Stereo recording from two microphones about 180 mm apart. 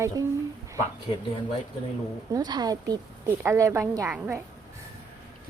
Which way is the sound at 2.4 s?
20° right (ahead or behind).